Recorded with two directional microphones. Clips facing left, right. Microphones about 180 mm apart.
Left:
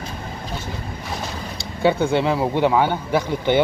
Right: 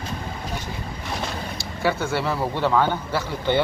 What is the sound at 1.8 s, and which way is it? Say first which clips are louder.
Speech: left 6 dB; 20° left (ahead or behind).